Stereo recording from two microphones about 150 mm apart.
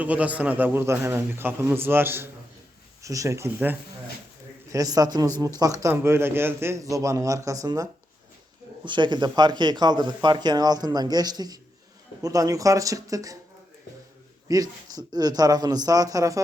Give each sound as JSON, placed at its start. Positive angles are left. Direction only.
{"t": 0.0, "sound": "a man's voice", "side_deg": -10}
{"t": 14.4, "sound": "speech", "side_deg": -25}